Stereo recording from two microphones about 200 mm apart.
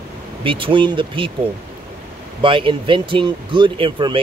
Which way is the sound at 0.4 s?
25° right (ahead or behind).